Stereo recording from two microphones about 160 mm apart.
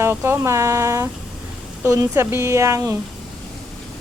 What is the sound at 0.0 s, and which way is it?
A woman's voice, 15° right (ahead or behind).